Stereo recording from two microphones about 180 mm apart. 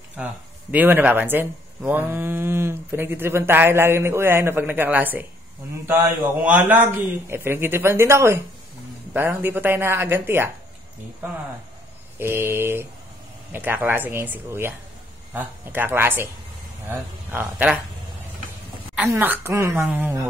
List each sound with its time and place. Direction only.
0.2 s speech: 10° right (ahead or behind)
12.2 s speech: 15° right (ahead or behind)
18.9 s speech: 10° right (ahead or behind)